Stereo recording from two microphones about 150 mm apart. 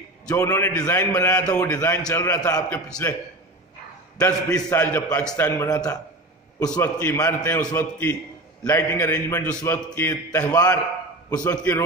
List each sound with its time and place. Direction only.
0.3 s a man's voice: 20° left (ahead or behind)
4.2 s a man's voice: 25° left (ahead or behind)
7.2 s a man's voice: 15° left (ahead or behind)
11.2 s a man's voice: 10° left (ahead or behind)